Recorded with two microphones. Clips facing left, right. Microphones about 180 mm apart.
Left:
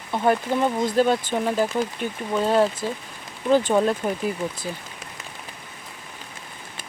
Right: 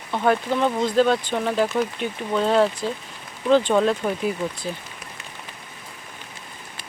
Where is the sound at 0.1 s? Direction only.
10° left (ahead or behind).